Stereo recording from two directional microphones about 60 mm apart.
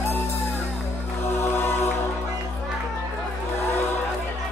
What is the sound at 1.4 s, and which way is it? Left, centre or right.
Music, left.